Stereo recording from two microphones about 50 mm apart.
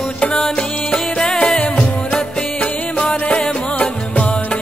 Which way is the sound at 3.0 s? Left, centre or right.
Left.